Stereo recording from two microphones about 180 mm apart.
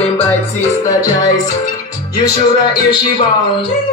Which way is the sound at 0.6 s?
20° left (ahead or behind).